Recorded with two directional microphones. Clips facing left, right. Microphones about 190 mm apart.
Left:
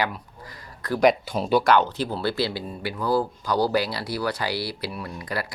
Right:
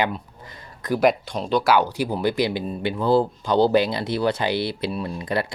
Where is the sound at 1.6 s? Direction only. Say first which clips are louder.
Right 1 dB; 10° right (ahead or behind).